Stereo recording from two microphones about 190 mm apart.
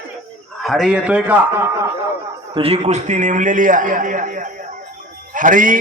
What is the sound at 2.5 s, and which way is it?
A man's voice, 30° right (ahead or behind).